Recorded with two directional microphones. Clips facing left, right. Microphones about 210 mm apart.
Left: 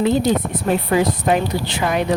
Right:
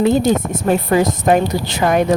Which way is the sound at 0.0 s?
45° right (ahead or behind).